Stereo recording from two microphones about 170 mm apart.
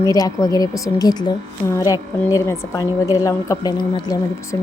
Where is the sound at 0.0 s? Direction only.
20° left (ahead or behind).